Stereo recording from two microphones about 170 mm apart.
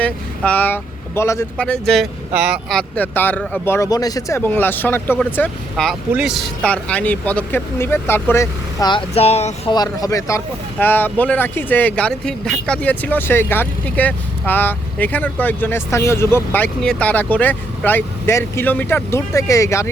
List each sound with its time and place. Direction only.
0.0 s speech: 10° left (ahead or behind)
2.3 s speech: 10° right (ahead or behind); by 8.4 s 15° left (ahead or behind)
8.8 s speech: 30° left (ahead or behind)
9.7 s speech: 20° left (ahead or behind)